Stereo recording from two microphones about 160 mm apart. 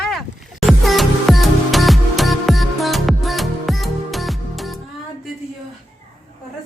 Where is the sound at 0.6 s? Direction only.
Centre (ahead or behind).